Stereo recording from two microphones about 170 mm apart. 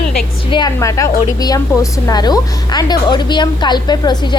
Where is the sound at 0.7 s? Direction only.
20° left (ahead or behind).